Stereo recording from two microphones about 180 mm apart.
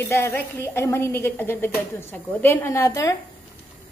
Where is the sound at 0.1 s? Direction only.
15° left (ahead or behind).